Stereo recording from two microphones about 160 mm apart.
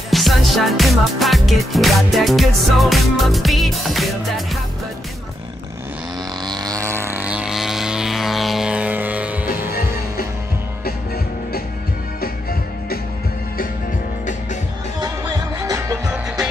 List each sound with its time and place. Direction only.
0.1 s music: centre (ahead or behind)
6.4 s vehicle: 25° right (ahead or behind); by 9.5 s 10° right (ahead or behind)
9.7 s music: 70° left (ahead or behind)
12.2 s music: 70° left (ahead or behind)